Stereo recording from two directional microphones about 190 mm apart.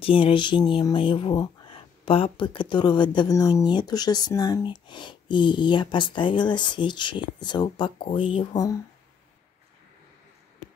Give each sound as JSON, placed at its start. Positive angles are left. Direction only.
{"t": 0.0, "sound": "speech", "side_deg": 25}